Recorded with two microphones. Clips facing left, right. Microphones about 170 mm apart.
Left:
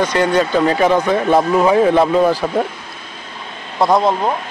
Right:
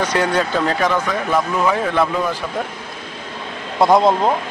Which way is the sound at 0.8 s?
30° left (ahead or behind).